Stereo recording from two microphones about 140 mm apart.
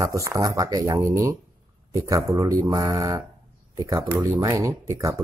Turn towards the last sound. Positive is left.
turn(degrees=-20)  # may be behind; listen again after turning